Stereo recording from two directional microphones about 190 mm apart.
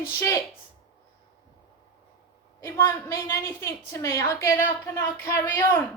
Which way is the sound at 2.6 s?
15° left (ahead or behind).